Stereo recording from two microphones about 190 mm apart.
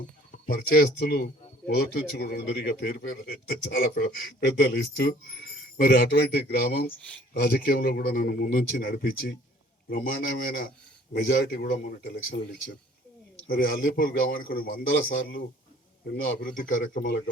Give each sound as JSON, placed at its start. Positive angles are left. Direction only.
{"t": 0.3, "sound": "a man's voice", "side_deg": 50}
{"t": 13.5, "sound": "a man's voice", "side_deg": 50}